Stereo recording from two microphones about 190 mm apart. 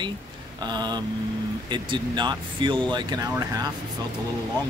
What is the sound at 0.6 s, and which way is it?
Speech, 20° right (ahead or behind).